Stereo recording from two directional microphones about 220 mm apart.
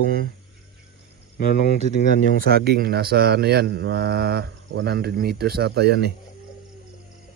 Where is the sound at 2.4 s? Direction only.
45° right (ahead or behind).